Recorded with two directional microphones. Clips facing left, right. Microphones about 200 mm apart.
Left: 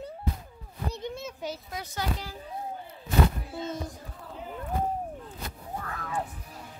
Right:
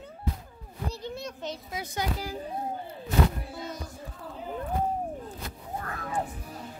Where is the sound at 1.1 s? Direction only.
5° left (ahead or behind).